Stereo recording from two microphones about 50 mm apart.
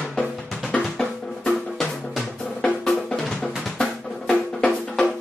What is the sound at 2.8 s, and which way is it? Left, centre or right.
Drum, centre.